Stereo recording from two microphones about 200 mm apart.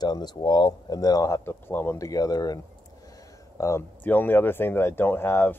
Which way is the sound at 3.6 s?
15° left (ahead or behind).